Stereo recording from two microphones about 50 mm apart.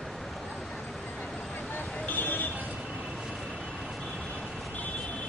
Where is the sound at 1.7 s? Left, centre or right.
Left.